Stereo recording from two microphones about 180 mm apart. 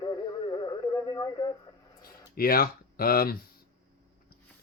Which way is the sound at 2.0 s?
55° left (ahead or behind).